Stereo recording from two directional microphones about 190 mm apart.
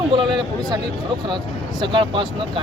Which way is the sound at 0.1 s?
25° right (ahead or behind).